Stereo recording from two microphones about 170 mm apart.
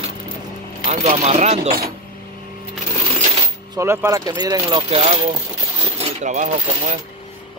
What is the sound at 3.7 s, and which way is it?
Speech, 15° right (ahead or behind).